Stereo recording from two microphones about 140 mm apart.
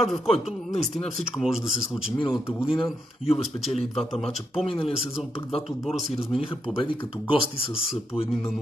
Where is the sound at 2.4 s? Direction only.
40° left (ahead or behind).